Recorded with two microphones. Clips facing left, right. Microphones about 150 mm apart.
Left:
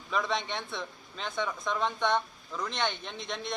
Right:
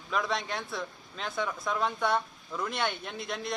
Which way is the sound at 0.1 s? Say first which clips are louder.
Even; centre (ahead or behind).